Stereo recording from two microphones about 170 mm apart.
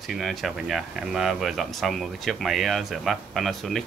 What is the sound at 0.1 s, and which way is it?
Speech, centre (ahead or behind).